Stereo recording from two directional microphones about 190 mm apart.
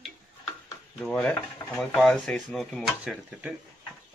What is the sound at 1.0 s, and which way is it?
Speech, 5° left (ahead or behind).